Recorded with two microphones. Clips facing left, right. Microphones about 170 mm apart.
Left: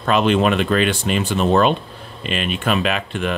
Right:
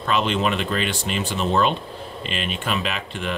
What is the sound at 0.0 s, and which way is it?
Speech, 55° left (ahead or behind).